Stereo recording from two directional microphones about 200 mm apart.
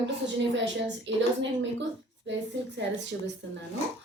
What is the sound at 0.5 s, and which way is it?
Speech, 60° right (ahead or behind).